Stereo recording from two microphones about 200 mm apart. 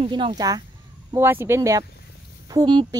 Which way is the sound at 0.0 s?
25° right (ahead or behind).